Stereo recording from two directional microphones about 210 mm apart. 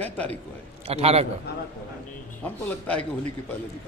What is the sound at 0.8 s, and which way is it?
Speech, 30° right (ahead or behind).